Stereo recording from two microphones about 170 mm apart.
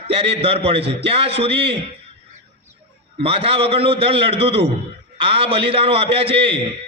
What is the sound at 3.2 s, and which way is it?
A man's voice, 35° right (ahead or behind).